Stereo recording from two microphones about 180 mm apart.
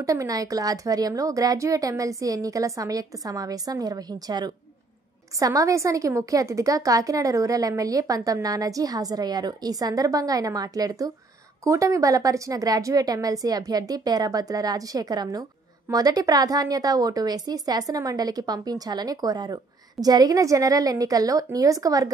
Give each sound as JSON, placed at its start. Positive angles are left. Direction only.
{"t": 0.0, "sound": "a woman's voice", "side_deg": -20}